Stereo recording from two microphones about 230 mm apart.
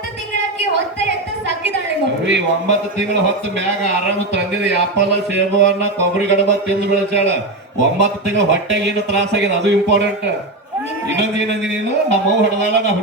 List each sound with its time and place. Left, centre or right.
2.2 s speech: right
4.3 s speech: right